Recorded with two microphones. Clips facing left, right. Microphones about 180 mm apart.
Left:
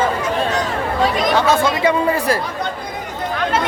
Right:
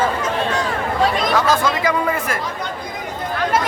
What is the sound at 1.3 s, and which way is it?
Speech, 30° left (ahead or behind).